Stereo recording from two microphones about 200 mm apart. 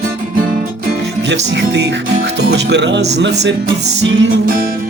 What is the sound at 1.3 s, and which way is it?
Music, 60° right (ahead or behind).